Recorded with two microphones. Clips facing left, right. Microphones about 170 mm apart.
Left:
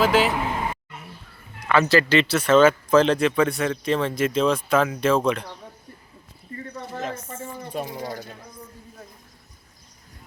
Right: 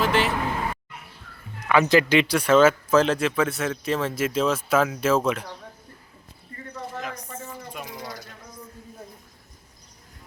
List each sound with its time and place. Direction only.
0.0 s speech: centre (ahead or behind)
1.7 s speech: 15° right (ahead or behind)
6.9 s a sound: 35° left (ahead or behind)
7.3 s speech: 30° left (ahead or behind)